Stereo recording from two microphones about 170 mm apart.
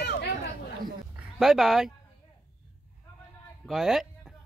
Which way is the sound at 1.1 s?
Centre (ahead or behind).